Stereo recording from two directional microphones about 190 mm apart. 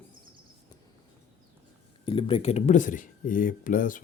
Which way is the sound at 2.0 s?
25° left (ahead or behind).